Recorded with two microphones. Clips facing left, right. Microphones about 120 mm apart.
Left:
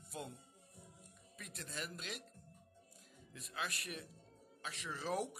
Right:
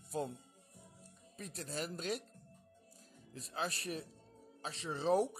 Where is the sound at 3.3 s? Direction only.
35° right (ahead or behind).